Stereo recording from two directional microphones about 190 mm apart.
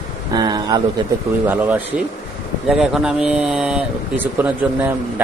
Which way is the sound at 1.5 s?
10° right (ahead or behind).